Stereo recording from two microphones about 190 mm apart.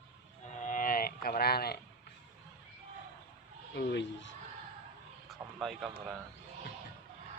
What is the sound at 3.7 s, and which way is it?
Speech, 65° left (ahead or behind).